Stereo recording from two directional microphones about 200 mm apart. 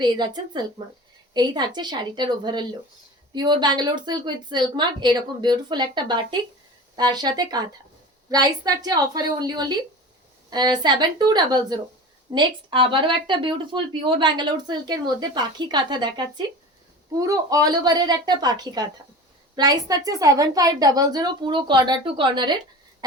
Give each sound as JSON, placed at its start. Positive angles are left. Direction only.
{"t": 0.0, "sound": "speech", "side_deg": -20}